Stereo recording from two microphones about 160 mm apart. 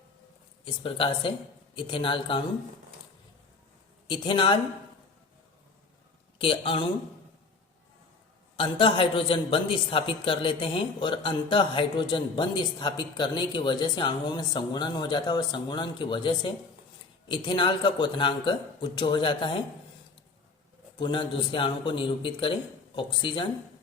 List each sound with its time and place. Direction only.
0.6 s a man's voice: 35° left (ahead or behind)
4.0 s a man's voice: 30° left (ahead or behind)
6.4 s a man's voice: 35° left (ahead or behind)
8.5 s a woman's voice: 35° left (ahead or behind)
21.0 s a man's voice: 30° left (ahead or behind)